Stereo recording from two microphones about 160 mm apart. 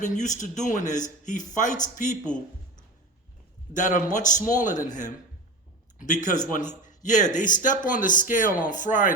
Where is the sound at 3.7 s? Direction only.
55° left (ahead or behind).